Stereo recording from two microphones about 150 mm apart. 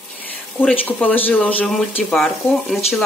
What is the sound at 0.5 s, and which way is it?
A woman's voice, 10° left (ahead or behind).